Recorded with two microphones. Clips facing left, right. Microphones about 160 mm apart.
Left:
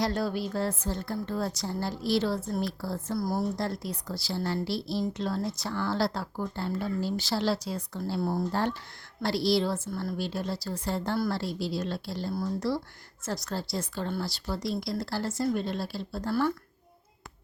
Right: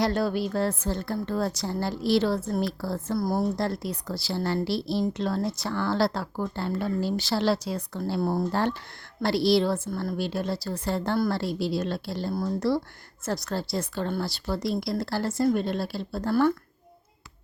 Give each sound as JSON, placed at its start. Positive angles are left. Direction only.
{"t": 0.0, "sound": "a woman's voice", "side_deg": -65}